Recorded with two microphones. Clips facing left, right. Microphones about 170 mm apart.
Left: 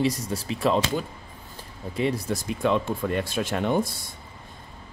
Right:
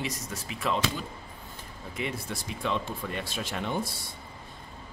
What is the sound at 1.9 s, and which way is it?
Speech, 35° left (ahead or behind).